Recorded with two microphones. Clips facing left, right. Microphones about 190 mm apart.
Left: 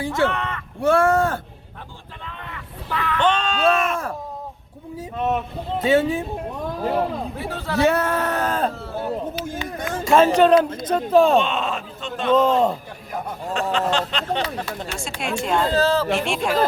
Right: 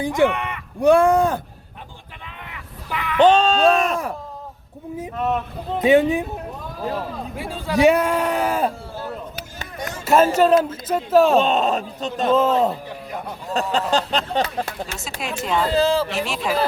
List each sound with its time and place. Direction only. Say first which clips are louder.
0.0 s speech: right 3 dB; 15° right (ahead or behind)
2.2 s a sound: left 3 dB; 15° right (ahead or behind)
3.2 s speech: right 5 dB; 40° right (ahead or behind)
5.8 s speech: right 3 dB; 15° right (ahead or behind)
7.3 s speech: right 5 dB; 15° right (ahead or behind)
9.0 s speech: left 8 dB; 25° left (ahead or behind)
9.7 s speech: even; 55° left (ahead or behind)
10.0 s speech: left 1 dB; 5° right (ahead or behind)
11.3 s speech: right 3 dB; 40° right (ahead or behind)
12.3 s speech: left 1 dB; 5° right (ahead or behind)
13.5 s speech: right 1 dB; 40° right (ahead or behind)
15.2 s speech: left 1 dB; centre (ahead or behind)